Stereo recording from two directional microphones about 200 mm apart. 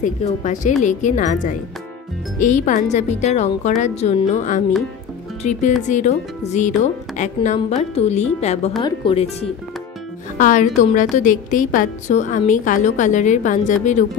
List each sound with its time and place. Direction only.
0.0 s a woman's voice: 40° left (ahead or behind)
10.3 s a woman's voice: 40° left (ahead or behind)